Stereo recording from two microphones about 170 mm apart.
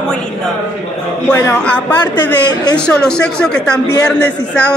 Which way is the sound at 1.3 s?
5° left (ahead or behind).